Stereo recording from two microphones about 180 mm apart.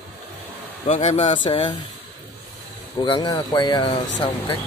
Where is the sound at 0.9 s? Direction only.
35° left (ahead or behind).